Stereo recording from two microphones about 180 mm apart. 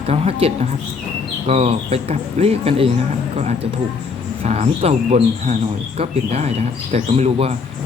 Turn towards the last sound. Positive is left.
turn(degrees=-35)  # may be behind; listen again after turning